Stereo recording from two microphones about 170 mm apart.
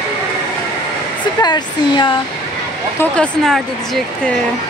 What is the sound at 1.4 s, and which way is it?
Speech, 25° left (ahead or behind).